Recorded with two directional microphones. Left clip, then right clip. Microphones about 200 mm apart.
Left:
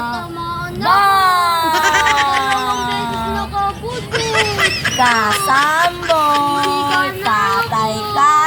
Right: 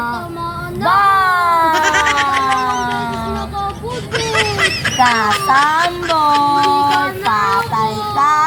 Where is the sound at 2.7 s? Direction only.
35° left (ahead or behind).